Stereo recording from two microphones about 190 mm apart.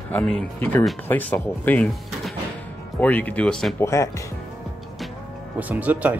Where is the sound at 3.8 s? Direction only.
15° left (ahead or behind).